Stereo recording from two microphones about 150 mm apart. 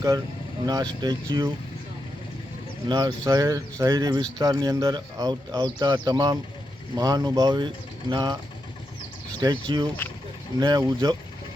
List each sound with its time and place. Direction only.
0.6 s speech: 25° right (ahead or behind)
2.9 s speech: 25° right (ahead or behind)
9.4 s speech: 30° right (ahead or behind)